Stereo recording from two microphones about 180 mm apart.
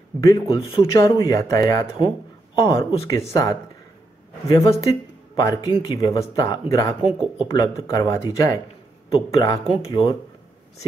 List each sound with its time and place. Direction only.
0.5 s speech: 30° left (ahead or behind)
0.9 s speech: 15° left (ahead or behind)
7.1 s speech: 5° right (ahead or behind)
7.4 s speech: 20° left (ahead or behind)
9.8 s speech: 30° left (ahead or behind)